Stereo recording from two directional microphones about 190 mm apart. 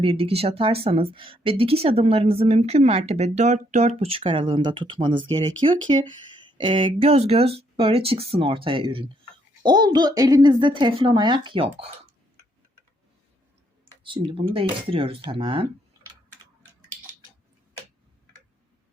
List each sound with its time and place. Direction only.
0.0 s speech: 30° right (ahead or behind)
14.0 s speech: 25° right (ahead or behind)